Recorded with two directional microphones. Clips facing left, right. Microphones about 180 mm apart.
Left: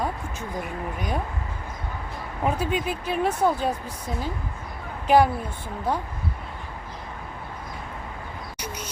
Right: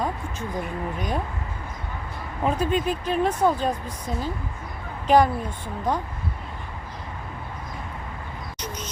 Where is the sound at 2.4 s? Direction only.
10° left (ahead or behind).